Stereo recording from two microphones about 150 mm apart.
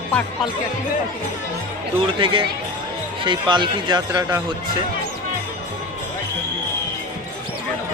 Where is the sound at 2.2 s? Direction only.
35° right (ahead or behind).